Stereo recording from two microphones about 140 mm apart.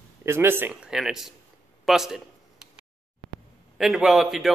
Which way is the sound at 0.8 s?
5° right (ahead or behind).